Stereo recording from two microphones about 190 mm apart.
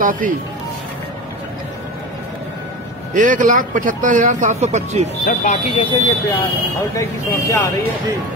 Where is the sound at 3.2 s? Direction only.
40° right (ahead or behind).